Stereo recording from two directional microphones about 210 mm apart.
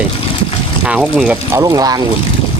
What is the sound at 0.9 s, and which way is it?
Speech, 5° right (ahead or behind).